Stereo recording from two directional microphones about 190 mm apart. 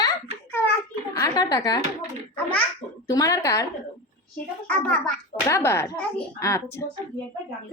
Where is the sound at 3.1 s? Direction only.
15° left (ahead or behind).